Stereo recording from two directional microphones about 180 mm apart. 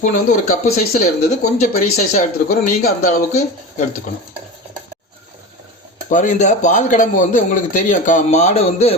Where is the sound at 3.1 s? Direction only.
40° left (ahead or behind).